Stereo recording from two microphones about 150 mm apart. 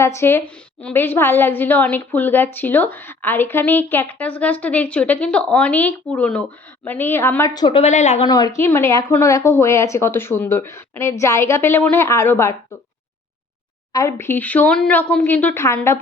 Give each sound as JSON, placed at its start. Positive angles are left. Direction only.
{"t": 0.2, "sound": "a woman's voice", "side_deg": 15}
{"t": 7.5, "sound": "a woman's voice", "side_deg": 30}
{"t": 7.8, "sound": "a woman's voice", "side_deg": 50}
{"t": 8.3, "sound": "a woman's voice", "side_deg": 25}
{"t": 13.9, "sound": "a woman's voice", "side_deg": 20}